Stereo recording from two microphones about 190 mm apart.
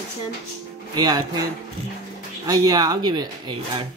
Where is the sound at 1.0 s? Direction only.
20° right (ahead or behind).